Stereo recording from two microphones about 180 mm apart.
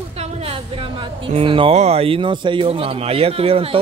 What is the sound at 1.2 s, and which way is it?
Speech, 30° right (ahead or behind).